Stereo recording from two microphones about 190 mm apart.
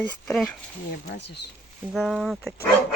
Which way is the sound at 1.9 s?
5° left (ahead or behind).